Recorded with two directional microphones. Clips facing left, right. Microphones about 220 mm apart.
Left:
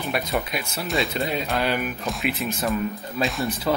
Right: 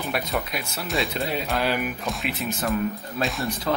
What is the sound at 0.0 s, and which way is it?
Speech, centre (ahead or behind).